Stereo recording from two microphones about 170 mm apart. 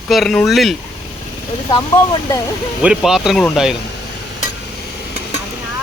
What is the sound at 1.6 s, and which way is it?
Speech, 25° left (ahead or behind).